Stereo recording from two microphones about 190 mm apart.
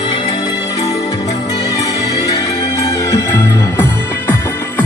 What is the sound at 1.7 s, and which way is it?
Music, 20° left (ahead or behind).